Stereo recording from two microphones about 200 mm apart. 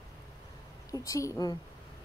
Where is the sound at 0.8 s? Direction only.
15° left (ahead or behind).